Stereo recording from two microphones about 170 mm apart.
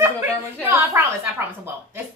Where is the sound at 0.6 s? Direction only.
15° right (ahead or behind).